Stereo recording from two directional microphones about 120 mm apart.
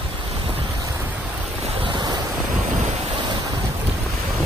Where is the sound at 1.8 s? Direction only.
40° right (ahead or behind).